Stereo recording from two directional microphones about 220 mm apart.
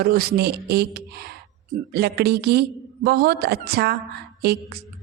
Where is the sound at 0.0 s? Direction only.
45° right (ahead or behind).